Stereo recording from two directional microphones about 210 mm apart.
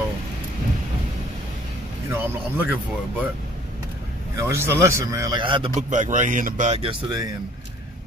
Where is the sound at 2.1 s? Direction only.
10° right (ahead or behind).